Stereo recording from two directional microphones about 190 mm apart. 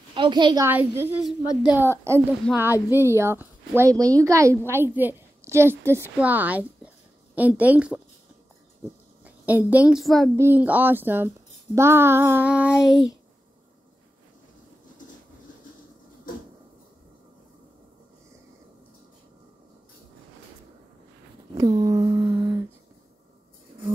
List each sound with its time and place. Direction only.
0.1 s a woman's voice: 25° right (ahead or behind)
0.7 s a woman's voice: 10° right (ahead or behind)
2.4 s speech: 5° left (ahead or behind)
2.9 s a woman's voice: 15° right (ahead or behind)
9.2 s a woman's voice: 10° right (ahead or behind)
10.3 s a woman's voice: 10° right (ahead or behind)
21.5 s a sound: 20° right (ahead or behind)